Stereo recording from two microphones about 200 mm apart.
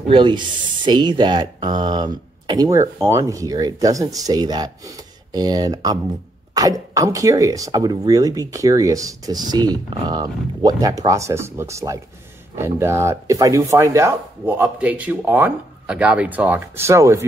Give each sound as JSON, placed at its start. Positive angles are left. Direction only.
{"t": 0.1, "sound": "speech", "side_deg": -25}